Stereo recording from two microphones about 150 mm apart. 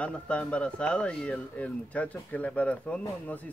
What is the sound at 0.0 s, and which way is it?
Speech, 10° left (ahead or behind).